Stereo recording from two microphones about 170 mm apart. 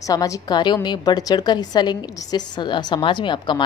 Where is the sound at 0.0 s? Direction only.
20° left (ahead or behind).